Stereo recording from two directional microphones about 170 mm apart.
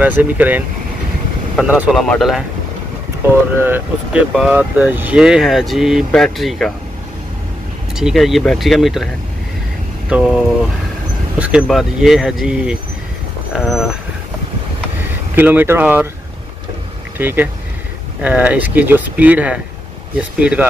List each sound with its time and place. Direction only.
0.2 s speech: 10° right (ahead or behind)
3.5 s speech: 10° right (ahead or behind)
7.9 s speech: centre (ahead or behind)
15.3 s speech: 10° right (ahead or behind)
17.2 s speech: 10° right (ahead or behind)